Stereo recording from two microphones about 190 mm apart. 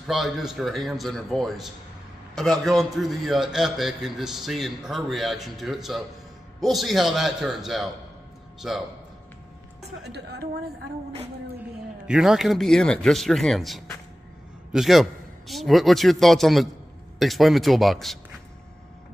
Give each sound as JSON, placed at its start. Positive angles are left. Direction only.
{"t": 0.0, "sound": "a man's voice", "side_deg": 0}
{"t": 10.1, "sound": "a woman's voice", "side_deg": -60}
{"t": 12.1, "sound": "a man's voice", "side_deg": 0}